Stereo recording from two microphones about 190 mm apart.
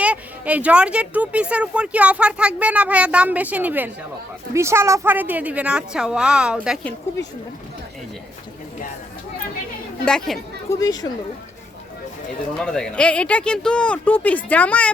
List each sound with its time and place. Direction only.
0.0 s speech: 5° right (ahead or behind)
10.1 s speech: centre (ahead or behind)
10.7 s speech: 20° left (ahead or behind)
12.5 s speech: 5° left (ahead or behind)